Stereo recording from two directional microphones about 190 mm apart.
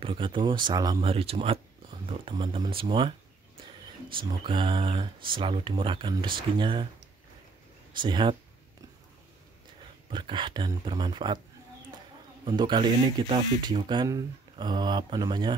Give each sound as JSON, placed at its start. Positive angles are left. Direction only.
{"t": 0.0, "sound": "speech", "side_deg": -25}
{"t": 7.9, "sound": "speech", "side_deg": -25}
{"t": 10.1, "sound": "speech", "side_deg": -25}
{"t": 12.4, "sound": "speech", "side_deg": -25}